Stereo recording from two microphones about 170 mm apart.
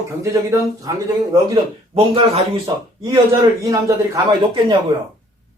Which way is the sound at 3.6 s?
20° right (ahead or behind).